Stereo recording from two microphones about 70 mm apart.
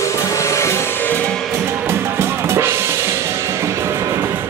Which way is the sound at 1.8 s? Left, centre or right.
Right.